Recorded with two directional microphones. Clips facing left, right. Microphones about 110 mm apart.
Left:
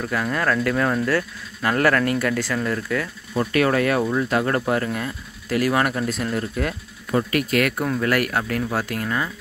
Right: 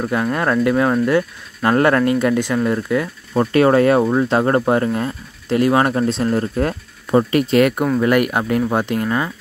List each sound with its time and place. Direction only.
0.0 s speech: 25° right (ahead or behind)